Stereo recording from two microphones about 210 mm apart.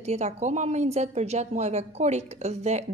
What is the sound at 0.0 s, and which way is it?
A woman's voice, 30° right (ahead or behind).